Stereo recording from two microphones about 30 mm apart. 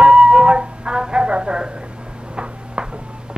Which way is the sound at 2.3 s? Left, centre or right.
Right.